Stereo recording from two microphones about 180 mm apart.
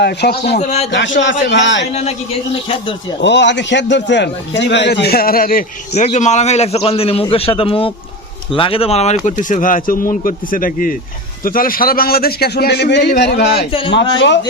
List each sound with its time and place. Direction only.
0.0 s a man's voice: 65° left (ahead or behind)
0.6 s a man's voice: 40° left (ahead or behind)
0.9 s a man's voice: 80° left
1.9 s a man's voice: 35° left (ahead or behind)
3.2 s a man's voice: 75° left (ahead or behind); by 5.6 s 50° left (ahead or behind)
5.9 s a man's voice: 40° left (ahead or behind); by 13.7 s 65° left (ahead or behind)
13.9 s a man's voice: 80° left